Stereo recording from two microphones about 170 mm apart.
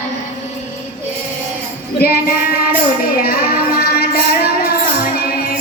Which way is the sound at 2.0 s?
60° left (ahead or behind).